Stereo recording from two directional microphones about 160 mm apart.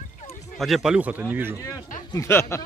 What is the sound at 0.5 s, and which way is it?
Speech, centre (ahead or behind).